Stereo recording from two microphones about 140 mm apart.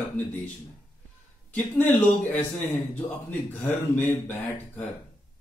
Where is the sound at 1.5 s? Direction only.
15° left (ahead or behind).